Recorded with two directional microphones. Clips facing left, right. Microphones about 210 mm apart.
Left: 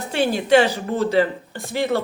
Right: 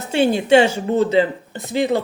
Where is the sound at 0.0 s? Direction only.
25° right (ahead or behind).